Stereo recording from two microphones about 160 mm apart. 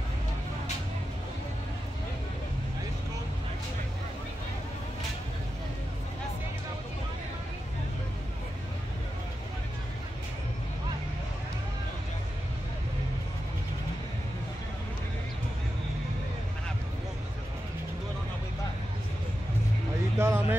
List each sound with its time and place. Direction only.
20.2 s vehicle: 15° right (ahead or behind)